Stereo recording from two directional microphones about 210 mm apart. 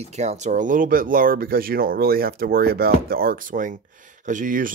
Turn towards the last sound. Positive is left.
turn(degrees=-40)  # may be behind; listen again after turning